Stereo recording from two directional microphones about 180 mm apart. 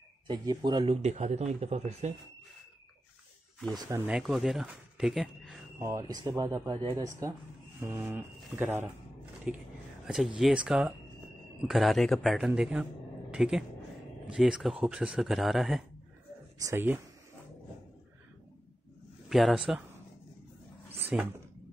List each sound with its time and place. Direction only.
0.3 s speech: 25° right (ahead or behind)
1.0 s speech: 40° right (ahead or behind)
4.1 s speech: centre (ahead or behind)
5.8 s speech: 15° right (ahead or behind); by 15.8 s centre (ahead or behind)
16.5 s speech: 15° right (ahead or behind)
19.2 s speech: centre (ahead or behind)
21.1 s speech: 5° right (ahead or behind)